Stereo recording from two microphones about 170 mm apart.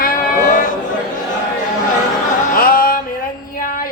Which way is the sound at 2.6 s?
55° left (ahead or behind).